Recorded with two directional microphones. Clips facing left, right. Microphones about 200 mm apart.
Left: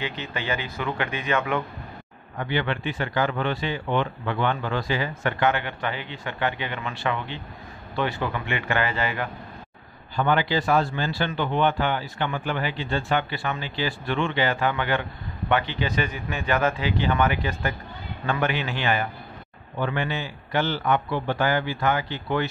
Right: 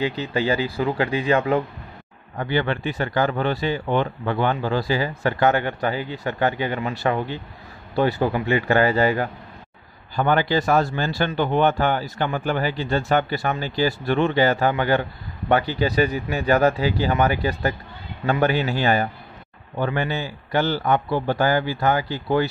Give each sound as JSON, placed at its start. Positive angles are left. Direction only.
{"t": 0.0, "sound": "speech", "side_deg": -35}